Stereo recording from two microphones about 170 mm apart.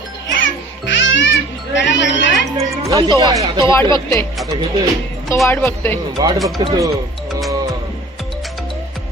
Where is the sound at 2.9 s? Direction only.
20° right (ahead or behind).